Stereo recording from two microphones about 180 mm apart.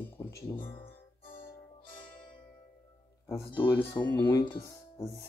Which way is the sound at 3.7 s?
25° left (ahead or behind).